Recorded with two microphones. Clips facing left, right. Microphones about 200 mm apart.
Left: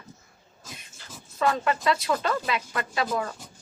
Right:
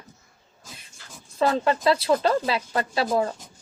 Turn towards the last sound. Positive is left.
turn(degrees=-30)  # may be behind; listen again after turning